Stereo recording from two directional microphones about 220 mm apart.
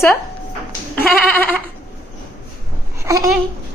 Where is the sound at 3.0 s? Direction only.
15° right (ahead or behind).